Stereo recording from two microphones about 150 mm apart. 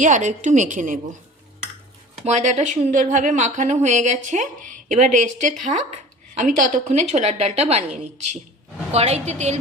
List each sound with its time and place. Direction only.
0.0 s a woman's voice: 55° right (ahead or behind)
2.2 s a woman's voice: 50° right (ahead or behind)
8.9 s a woman's voice: 45° right (ahead or behind)